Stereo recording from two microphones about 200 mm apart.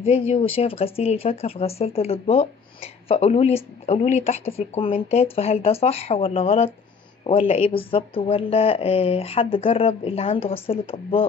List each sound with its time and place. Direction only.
0.3 s speech: 30° left (ahead or behind)